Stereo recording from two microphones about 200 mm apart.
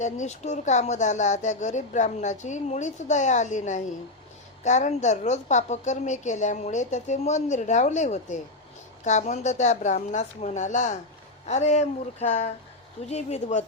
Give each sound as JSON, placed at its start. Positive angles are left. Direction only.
{"t": 0.0, "sound": "speech", "side_deg": 35}